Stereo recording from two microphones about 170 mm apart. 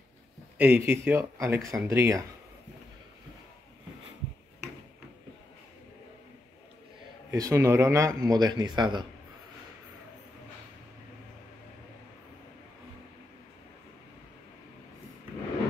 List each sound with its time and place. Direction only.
0.6 s speech: 10° right (ahead or behind)
7.2 s speech: 20° right (ahead or behind)